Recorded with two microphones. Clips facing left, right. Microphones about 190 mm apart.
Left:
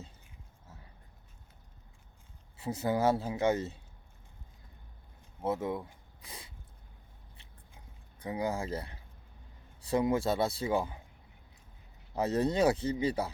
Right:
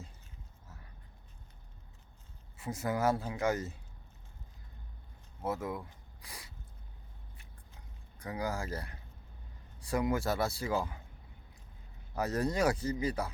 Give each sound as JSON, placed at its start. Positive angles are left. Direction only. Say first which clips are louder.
{"t": 2.6, "sound": "a man's voice", "louder": "left 3 dB", "side_deg": 25}
{"t": 5.4, "sound": "speech", "louder": "left 3 dB", "side_deg": 25}
{"t": 6.2, "sound": "a sound", "louder": "left 2 dB", "side_deg": 25}
{"t": 8.2, "sound": "a man's voice", "louder": "left 3 dB", "side_deg": 25}
{"t": 12.1, "sound": "a man's voice", "louder": "left 3 dB", "side_deg": 25}